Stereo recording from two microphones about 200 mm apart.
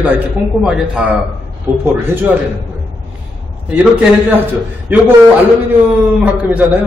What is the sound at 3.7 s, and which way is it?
Speech, 5° right (ahead or behind).